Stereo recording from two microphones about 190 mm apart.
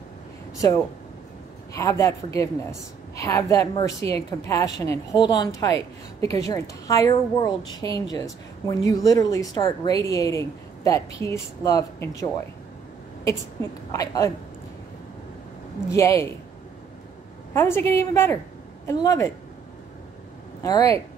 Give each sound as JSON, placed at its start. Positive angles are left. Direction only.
{"t": 1.8, "sound": "a woman's voice", "side_deg": 15}
{"t": 13.9, "sound": "a woman's voice", "side_deg": 15}
{"t": 15.9, "sound": "a woman's voice", "side_deg": 15}
{"t": 17.6, "sound": "a woman's voice", "side_deg": 15}
{"t": 20.6, "sound": "a woman's voice", "side_deg": 20}